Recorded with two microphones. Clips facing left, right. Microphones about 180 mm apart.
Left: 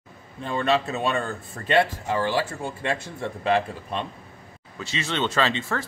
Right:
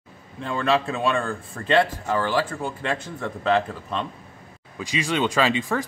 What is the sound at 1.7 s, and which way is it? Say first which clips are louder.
A man's voice: right 1 dB; 20° left (ahead or behind).